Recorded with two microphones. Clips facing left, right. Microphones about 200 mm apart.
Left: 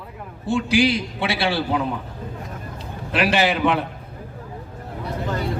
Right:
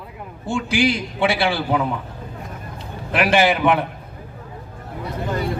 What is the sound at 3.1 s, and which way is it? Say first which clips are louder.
Speech: right 3 dB; 55° right (ahead or behind).